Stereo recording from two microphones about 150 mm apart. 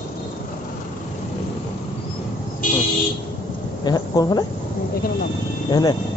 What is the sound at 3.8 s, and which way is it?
Speech, 25° left (ahead or behind).